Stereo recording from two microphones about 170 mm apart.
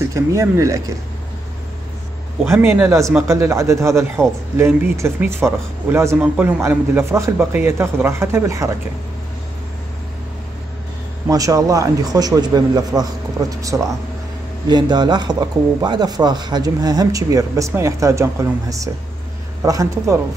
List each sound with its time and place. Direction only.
0.1 s speech: 20° right (ahead or behind)
2.5 s speech: 10° right (ahead or behind)
11.2 s speech: 20° right (ahead or behind)